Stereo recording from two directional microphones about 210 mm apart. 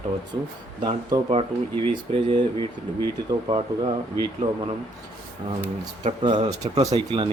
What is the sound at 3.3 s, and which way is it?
Speech, 25° right (ahead or behind).